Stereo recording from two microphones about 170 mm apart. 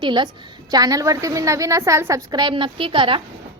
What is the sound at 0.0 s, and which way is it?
A woman's voice, 25° right (ahead or behind).